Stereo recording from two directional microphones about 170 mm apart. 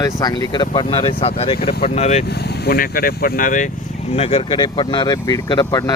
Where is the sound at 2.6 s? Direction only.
60° left (ahead or behind).